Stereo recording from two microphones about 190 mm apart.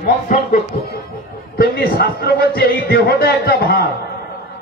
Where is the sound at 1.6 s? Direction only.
55° left (ahead or behind).